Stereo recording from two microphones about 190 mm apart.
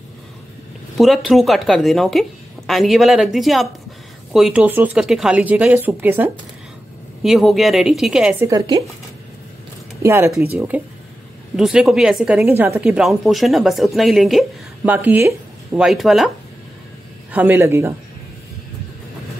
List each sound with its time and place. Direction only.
0.9 s a woman's voice: centre (ahead or behind)
8.5 s speech: 20° right (ahead or behind)
10.0 s a woman's voice: 15° right (ahead or behind)
17.3 s speech: 10° right (ahead or behind)